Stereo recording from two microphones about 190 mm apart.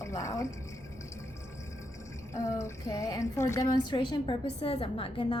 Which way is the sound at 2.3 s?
15° left (ahead or behind).